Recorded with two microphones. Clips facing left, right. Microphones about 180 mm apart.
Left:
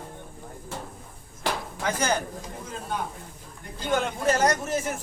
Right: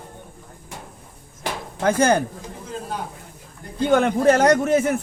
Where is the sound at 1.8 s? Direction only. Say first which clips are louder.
Right 10 dB; 55° right (ahead or behind).